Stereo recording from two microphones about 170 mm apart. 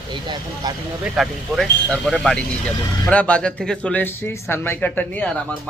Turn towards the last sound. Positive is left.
turn(degrees=10)  # may be behind; listen again after turning